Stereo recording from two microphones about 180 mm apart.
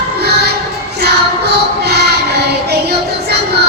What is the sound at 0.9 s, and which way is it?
Child singing, 65° right (ahead or behind).